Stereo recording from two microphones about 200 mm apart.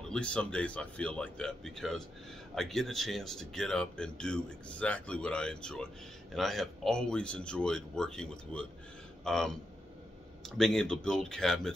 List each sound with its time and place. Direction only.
0.1 s speech: 5° left (ahead or behind)
10.6 s speech: 5° left (ahead or behind)